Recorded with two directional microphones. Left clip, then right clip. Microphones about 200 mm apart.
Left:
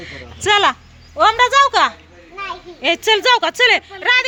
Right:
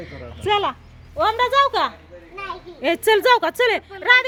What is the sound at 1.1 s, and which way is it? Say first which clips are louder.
Speech: left 5 dB; 20° left (ahead or behind).